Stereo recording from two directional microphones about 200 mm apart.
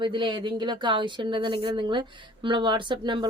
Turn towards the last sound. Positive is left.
turn(degrees=-25)  # may be behind; listen again after turning